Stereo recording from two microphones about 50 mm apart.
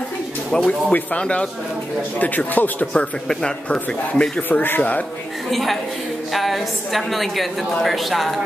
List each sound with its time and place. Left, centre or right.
0.5 s a man's voice: centre
2.1 s speech: left
3.6 s a man's voice: centre
4.4 s speech: left
5.5 s a woman's voice: centre